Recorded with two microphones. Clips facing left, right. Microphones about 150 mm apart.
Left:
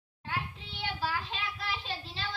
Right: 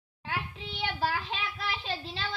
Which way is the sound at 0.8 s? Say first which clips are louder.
Right 3 dB; 70° right (ahead or behind).